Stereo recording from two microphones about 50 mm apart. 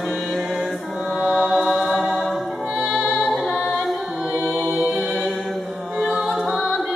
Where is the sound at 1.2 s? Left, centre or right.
Centre.